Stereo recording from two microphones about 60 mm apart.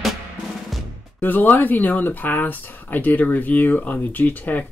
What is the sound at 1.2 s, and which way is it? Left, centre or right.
Speech, left.